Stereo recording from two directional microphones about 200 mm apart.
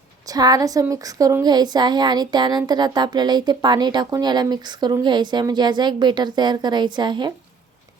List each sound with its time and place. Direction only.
0.3 s a woman's voice: 20° right (ahead or behind)